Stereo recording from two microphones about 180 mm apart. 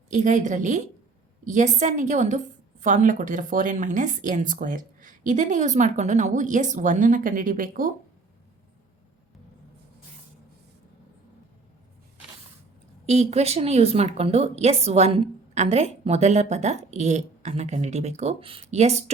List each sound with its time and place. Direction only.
0.1 s speech: 45° right (ahead or behind)
13.1 s a woman's voice: 35° right (ahead or behind)